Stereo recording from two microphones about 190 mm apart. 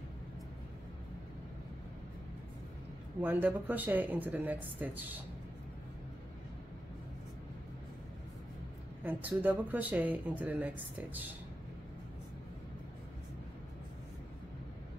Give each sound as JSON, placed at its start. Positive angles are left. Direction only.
{"t": 3.2, "sound": "speech", "side_deg": -10}
{"t": 9.0, "sound": "speech", "side_deg": -10}